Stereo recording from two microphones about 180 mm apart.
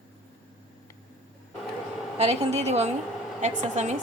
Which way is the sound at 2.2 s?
35° right (ahead or behind).